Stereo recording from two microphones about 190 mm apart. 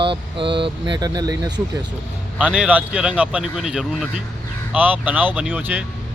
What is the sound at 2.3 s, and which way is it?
Speech, 5° right (ahead or behind).